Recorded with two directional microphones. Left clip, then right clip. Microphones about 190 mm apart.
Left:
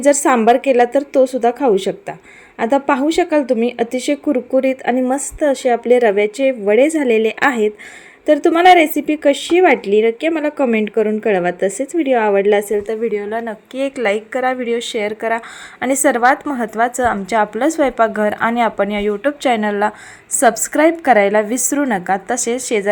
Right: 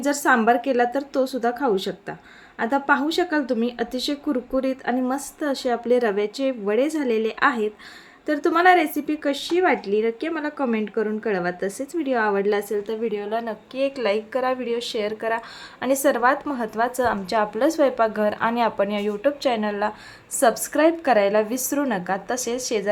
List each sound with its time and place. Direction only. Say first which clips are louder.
0.0 s a woman's voice: left 7 dB; 25° left (ahead or behind)